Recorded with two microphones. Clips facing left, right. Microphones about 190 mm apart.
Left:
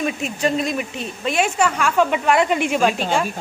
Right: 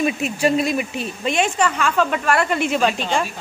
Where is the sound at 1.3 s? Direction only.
5° left (ahead or behind).